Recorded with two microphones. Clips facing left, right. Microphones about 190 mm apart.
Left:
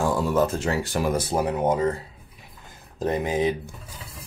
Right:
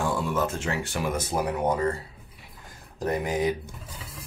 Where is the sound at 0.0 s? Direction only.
40° left (ahead or behind); by 3.5 s 25° left (ahead or behind).